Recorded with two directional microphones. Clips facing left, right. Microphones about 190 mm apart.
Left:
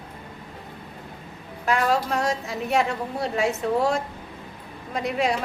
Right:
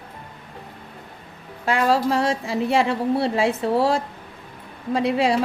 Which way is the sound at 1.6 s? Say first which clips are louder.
Right 3 dB; 30° right (ahead or behind).